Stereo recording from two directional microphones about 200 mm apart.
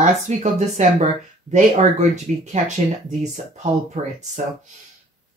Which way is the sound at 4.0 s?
40° right (ahead or behind).